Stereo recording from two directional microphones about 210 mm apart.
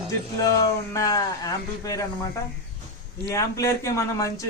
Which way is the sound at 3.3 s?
15° left (ahead or behind).